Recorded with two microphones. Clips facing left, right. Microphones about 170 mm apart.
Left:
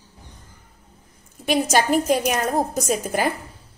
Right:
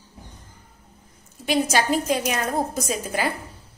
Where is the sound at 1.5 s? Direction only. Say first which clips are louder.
Left 2 dB; 50° left (ahead or behind).